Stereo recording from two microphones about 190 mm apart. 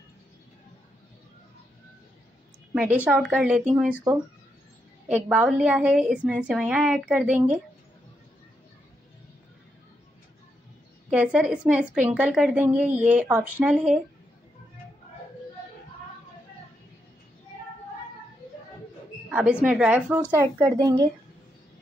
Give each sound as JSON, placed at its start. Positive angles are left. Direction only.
{"t": 2.7, "sound": "speech", "side_deg": -5}
{"t": 5.0, "sound": "a woman's voice", "side_deg": -5}
{"t": 11.1, "sound": "a woman's voice", "side_deg": -5}
{"t": 19.2, "sound": "speech", "side_deg": -5}
{"t": 20.8, "sound": "speech", "side_deg": -20}